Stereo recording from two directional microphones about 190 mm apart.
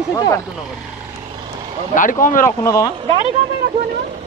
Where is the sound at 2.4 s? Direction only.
15° left (ahead or behind).